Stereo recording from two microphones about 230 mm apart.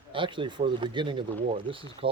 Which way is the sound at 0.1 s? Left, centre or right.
Right.